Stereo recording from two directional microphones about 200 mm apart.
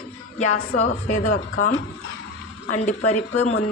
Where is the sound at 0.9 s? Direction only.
40° left (ahead or behind).